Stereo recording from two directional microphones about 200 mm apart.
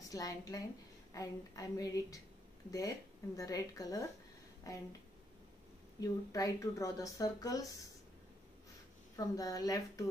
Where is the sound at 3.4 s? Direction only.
15° left (ahead or behind).